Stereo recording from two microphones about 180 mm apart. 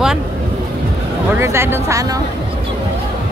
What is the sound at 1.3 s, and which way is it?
Speech, 15° right (ahead or behind).